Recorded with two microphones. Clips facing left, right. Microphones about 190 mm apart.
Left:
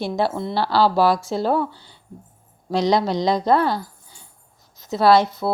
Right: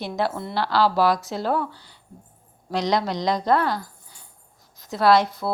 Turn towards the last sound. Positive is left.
turn(degrees=25)  # may be behind; listen again after turning